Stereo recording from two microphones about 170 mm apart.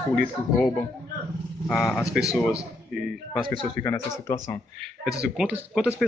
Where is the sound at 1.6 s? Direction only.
5° left (ahead or behind).